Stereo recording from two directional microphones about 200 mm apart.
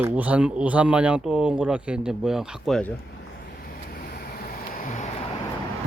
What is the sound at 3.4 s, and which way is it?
Vehicle, 45° left (ahead or behind).